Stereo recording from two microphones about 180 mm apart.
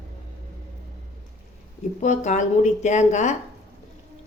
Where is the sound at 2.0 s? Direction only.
40° left (ahead or behind).